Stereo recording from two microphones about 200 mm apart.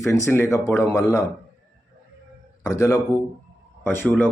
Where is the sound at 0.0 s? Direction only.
15° left (ahead or behind).